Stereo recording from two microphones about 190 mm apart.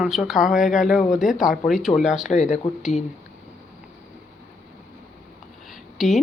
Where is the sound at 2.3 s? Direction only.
40° left (ahead or behind).